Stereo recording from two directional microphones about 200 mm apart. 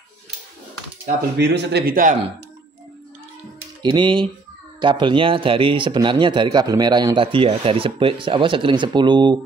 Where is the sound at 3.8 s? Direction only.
25° right (ahead or behind).